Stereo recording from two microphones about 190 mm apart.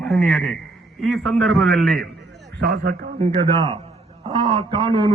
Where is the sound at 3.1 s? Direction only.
25° right (ahead or behind).